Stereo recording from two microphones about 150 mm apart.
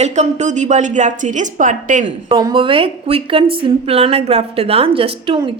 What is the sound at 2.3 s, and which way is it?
Speech, 30° right (ahead or behind).